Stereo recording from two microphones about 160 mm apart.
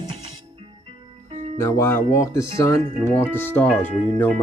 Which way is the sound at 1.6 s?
15° left (ahead or behind).